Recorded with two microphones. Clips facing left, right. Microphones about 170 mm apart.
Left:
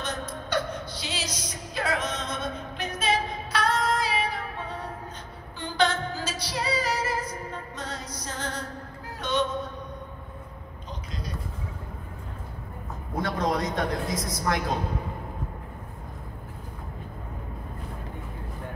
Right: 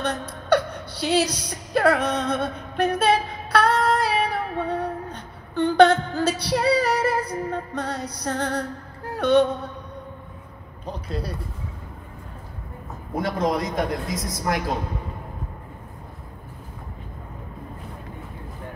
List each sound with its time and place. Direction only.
0.0 s a sound: 65° right (ahead or behind)
9.1 s music: 60° right (ahead or behind)
10.9 s speech: 30° right (ahead or behind)
13.1 s a man's voice: 20° right (ahead or behind)